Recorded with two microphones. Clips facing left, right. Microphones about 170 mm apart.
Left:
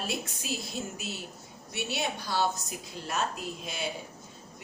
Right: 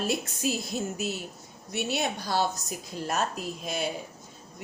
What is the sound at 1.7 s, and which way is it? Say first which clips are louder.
Speech: right 4 dB; 45° right (ahead or behind).